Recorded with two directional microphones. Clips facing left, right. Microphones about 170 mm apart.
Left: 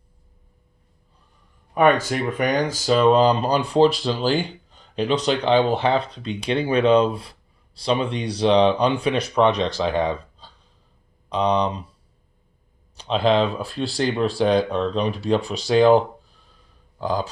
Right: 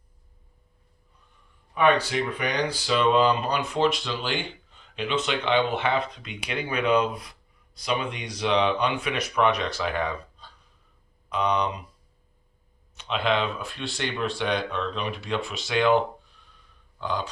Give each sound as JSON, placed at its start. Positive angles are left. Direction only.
{"t": 1.7, "sound": "speech", "side_deg": 45}
{"t": 13.0, "sound": "speech", "side_deg": 35}